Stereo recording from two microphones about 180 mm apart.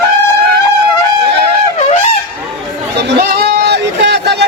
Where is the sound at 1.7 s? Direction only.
40° left (ahead or behind).